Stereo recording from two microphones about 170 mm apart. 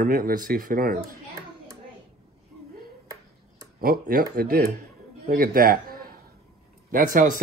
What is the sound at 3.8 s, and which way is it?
Speech, 60° right (ahead or behind).